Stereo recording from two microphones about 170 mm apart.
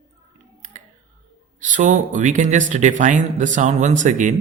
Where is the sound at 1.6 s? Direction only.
50° right (ahead or behind).